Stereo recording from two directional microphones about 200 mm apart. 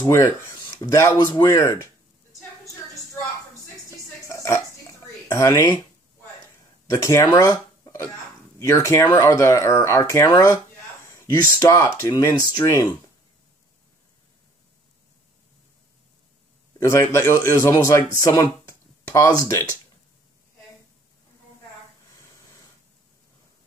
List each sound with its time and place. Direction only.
0.0 s speech: 15° left (ahead or behind)
3.7 s music: 15° left (ahead or behind)
5.0 s a sound: 15° left (ahead or behind)
6.9 s speech: 15° left (ahead or behind)
16.8 s speech: 15° left (ahead or behind)